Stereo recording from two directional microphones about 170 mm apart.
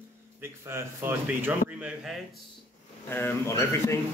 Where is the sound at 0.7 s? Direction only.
15° right (ahead or behind).